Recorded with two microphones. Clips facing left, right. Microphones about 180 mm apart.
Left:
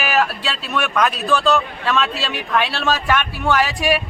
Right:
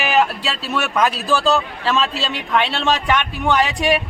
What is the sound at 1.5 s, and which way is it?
Speech, 30° right (ahead or behind).